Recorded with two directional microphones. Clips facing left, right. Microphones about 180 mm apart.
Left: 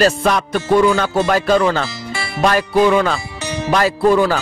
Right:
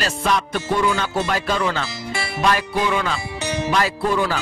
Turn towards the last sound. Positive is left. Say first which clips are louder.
# left 8 dB
turn(degrees=45)  # may be behind; listen again after turning